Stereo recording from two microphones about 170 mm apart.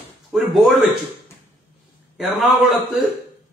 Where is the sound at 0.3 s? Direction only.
Centre (ahead or behind).